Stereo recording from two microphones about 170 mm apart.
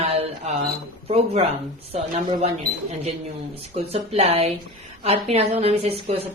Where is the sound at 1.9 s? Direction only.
35° right (ahead or behind).